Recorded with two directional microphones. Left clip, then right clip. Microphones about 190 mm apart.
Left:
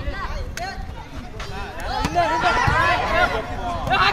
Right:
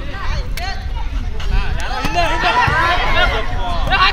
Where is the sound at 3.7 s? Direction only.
55° left (ahead or behind).